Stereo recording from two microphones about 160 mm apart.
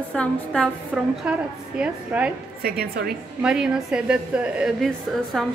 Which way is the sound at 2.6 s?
70° right (ahead or behind).